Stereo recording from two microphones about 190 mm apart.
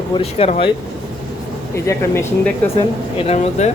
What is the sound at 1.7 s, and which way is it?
Speech, 15° left (ahead or behind).